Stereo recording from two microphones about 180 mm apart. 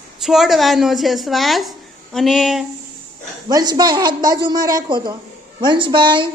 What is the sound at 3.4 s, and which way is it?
A woman's voice, 20° right (ahead or behind).